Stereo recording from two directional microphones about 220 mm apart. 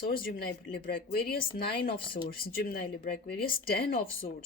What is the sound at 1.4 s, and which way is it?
Speech, 25° left (ahead or behind).